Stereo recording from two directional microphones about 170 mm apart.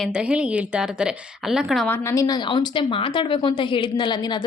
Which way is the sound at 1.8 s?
15° left (ahead or behind).